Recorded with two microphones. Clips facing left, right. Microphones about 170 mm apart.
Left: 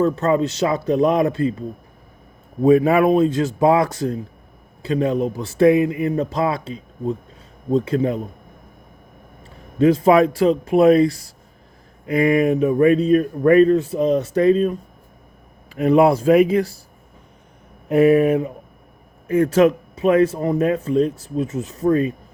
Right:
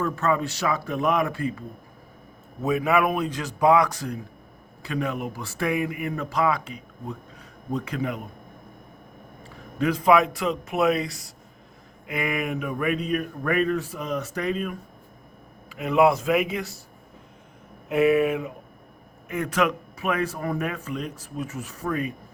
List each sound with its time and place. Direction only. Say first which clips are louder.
0.0 s a man's voice: left 7 dB; 30° left (ahead or behind)
2.6 s a man's voice: left 8 dB; 35° left (ahead or behind)
9.7 s speech: left 6 dB; 30° left (ahead or behind)
17.8 s a man's voice: left 6 dB; 40° left (ahead or behind)